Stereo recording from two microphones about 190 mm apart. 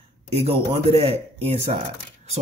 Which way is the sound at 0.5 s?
30° right (ahead or behind).